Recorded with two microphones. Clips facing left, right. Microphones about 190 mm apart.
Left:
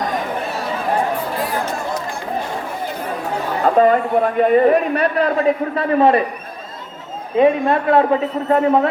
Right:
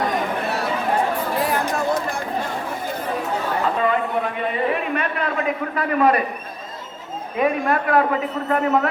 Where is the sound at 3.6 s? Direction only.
45° left (ahead or behind); by 6.2 s 25° left (ahead or behind).